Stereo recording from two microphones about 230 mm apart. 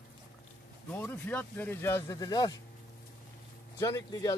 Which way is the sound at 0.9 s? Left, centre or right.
Centre.